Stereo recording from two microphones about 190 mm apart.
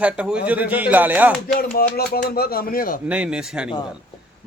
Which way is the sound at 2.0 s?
55° left (ahead or behind).